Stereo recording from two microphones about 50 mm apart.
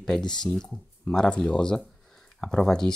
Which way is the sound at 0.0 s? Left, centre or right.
Centre.